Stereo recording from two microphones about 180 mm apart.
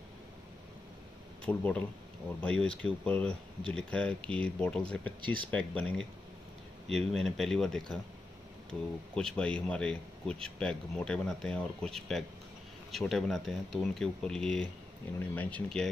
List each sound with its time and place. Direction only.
1.4 s speech: 10° left (ahead or behind)
5.2 s speech: 25° right (ahead or behind)
5.5 s speech: 10° left (ahead or behind)